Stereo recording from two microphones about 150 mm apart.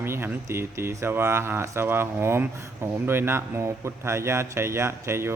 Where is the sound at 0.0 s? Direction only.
15° right (ahead or behind).